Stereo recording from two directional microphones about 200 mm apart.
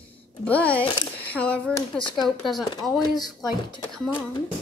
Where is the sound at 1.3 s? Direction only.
5° left (ahead or behind).